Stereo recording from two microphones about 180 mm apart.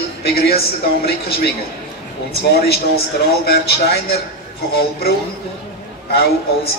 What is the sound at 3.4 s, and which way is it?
Speech, 60° left (ahead or behind).